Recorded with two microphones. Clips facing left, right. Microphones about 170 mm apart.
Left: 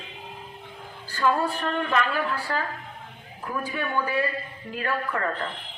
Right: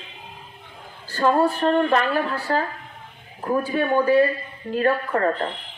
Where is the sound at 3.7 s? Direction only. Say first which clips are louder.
Right 9 dB; 40° right (ahead or behind).